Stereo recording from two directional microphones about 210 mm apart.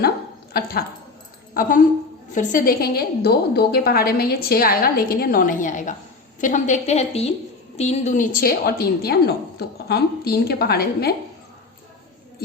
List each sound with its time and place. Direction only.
0.5 s a woman's voice: 50° left (ahead or behind)